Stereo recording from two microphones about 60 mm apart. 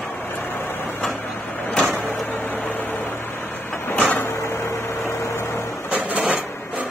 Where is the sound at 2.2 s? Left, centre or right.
Left.